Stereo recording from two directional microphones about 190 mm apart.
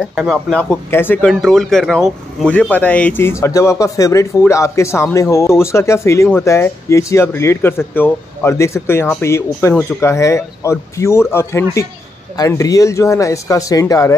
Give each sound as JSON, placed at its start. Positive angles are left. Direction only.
{"t": 0.0, "sound": "speech", "side_deg": 0}